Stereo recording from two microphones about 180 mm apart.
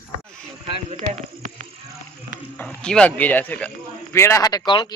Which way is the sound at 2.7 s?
5° left (ahead or behind).